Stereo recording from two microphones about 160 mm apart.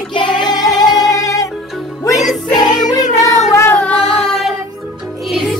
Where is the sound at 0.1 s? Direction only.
30° left (ahead or behind).